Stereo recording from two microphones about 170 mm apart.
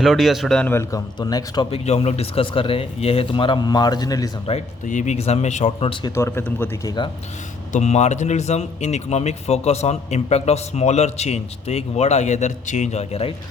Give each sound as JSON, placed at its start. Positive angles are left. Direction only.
{"t": 0.0, "sound": "speech", "side_deg": 0}
{"t": 1.7, "sound": "a man's voice", "side_deg": 40}
{"t": 4.4, "sound": "a man's voice", "side_deg": 45}
{"t": 6.1, "sound": "speech", "side_deg": 15}
{"t": 7.7, "sound": "a man's voice", "side_deg": 40}